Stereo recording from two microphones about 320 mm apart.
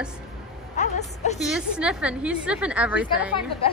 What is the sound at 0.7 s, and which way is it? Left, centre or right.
Speech, left.